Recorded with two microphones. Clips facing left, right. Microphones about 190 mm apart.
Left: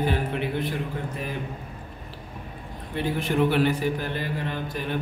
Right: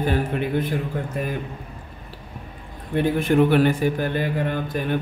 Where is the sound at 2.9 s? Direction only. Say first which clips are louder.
Right 6 dB; 50° right (ahead or behind).